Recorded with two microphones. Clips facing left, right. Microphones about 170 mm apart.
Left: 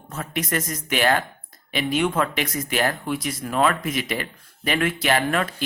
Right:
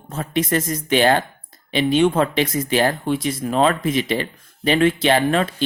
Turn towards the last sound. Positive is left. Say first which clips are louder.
# right 5 dB
turn(degrees=-30)  # may be behind; listen again after turning